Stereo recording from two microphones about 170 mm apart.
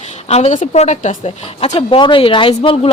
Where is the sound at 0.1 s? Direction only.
40° left (ahead or behind).